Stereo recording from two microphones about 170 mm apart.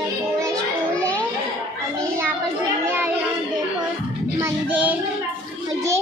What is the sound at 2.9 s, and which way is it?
Child singing, 10° right (ahead or behind).